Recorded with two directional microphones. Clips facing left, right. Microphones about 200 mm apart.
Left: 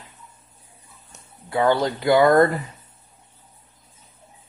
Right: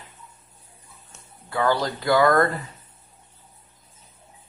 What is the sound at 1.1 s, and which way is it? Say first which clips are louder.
Speech: left 5 dB; 20° left (ahead or behind).